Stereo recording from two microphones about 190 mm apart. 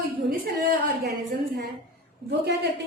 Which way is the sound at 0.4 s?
55° right (ahead or behind).